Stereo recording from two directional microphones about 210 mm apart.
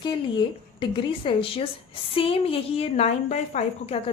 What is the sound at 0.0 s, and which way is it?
A woman's voice, 20° left (ahead or behind).